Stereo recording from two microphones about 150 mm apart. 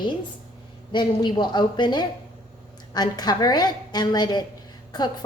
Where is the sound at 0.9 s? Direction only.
30° left (ahead or behind).